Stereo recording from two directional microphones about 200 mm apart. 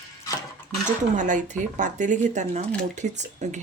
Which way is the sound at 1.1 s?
40° right (ahead or behind).